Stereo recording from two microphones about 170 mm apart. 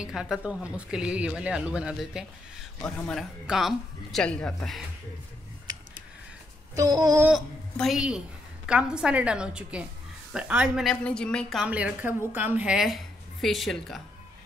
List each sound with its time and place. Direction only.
0.0 s a woman's voice: 5° right (ahead or behind)
6.8 s a sound: 20° right (ahead or behind)
7.7 s a woman's voice: centre (ahead or behind)
11.6 s a woman's voice: 10° right (ahead or behind)